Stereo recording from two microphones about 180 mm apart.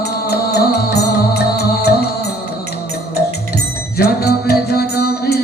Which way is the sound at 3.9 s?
60° left (ahead or behind).